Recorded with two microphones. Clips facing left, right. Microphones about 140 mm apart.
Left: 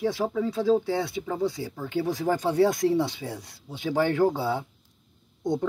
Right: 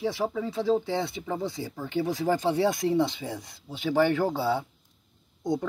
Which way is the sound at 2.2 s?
5° right (ahead or behind).